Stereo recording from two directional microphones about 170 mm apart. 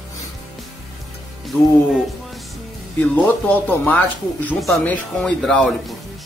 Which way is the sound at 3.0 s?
10° left (ahead or behind).